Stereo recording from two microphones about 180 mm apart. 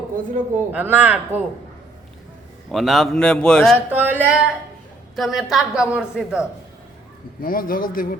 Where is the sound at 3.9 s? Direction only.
10° right (ahead or behind).